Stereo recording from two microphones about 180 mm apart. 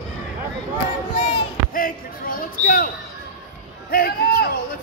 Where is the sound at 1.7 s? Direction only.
50° left (ahead or behind).